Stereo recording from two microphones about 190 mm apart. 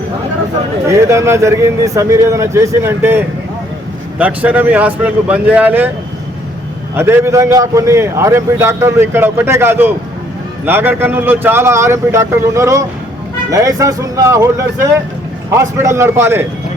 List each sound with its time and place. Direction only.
0.9 s a man's voice: 15° right (ahead or behind)
6.9 s a man's voice: 10° right (ahead or behind)